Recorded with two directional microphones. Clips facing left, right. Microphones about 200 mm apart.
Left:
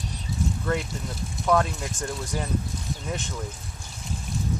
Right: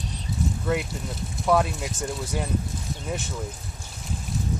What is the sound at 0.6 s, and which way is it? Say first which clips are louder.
Speech: right 1 dB; 5° right (ahead or behind).